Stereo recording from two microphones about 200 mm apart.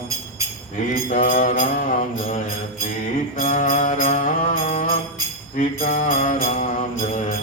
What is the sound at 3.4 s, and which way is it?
Music, 45° left (ahead or behind).